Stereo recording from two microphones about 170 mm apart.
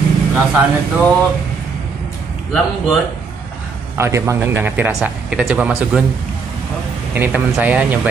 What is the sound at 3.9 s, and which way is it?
Speech, 15° right (ahead or behind).